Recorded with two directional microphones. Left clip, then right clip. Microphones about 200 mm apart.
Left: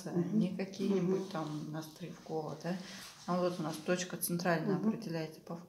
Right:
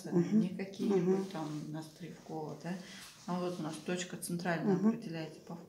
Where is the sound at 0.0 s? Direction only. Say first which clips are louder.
Right 3 dB; 15° left (ahead or behind).